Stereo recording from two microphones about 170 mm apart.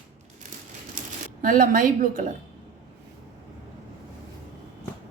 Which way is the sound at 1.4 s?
55° right (ahead or behind).